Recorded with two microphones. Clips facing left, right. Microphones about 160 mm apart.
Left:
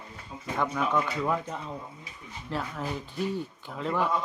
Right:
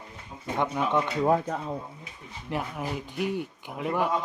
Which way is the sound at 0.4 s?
20° right (ahead or behind).